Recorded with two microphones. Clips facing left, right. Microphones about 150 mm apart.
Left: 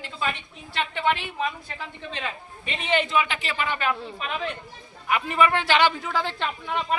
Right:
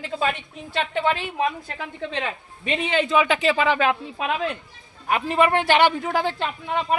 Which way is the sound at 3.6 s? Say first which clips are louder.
Right 6 dB; 90° right.